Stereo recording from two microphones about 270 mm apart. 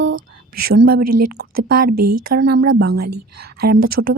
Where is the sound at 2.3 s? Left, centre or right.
Right.